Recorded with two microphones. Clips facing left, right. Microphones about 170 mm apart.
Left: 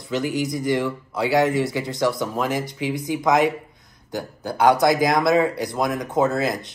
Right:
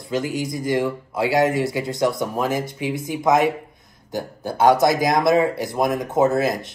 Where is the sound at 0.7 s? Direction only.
25° right (ahead or behind).